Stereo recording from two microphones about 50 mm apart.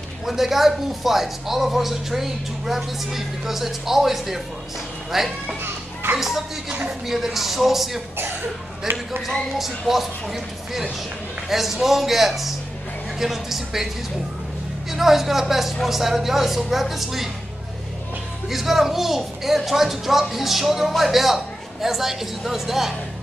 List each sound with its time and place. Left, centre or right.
0.2 s speech: centre
6.7 s speech: centre
7.1 s speech: centre
9.6 s speech: centre
14.9 s speech: centre
18.5 s speech: centre